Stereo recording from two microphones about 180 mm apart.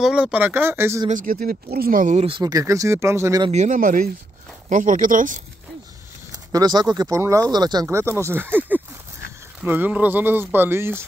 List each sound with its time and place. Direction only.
0.0 s speech: 5° right (ahead or behind)
1.0 s speech: 45° right (ahead or behind)
2.2 s speech: 25° right (ahead or behind)
3.4 s speech: 40° right (ahead or behind)
6.3 s speech: 20° right (ahead or behind)